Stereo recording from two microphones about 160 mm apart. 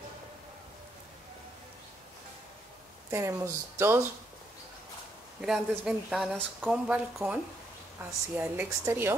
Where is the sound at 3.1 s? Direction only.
20° right (ahead or behind).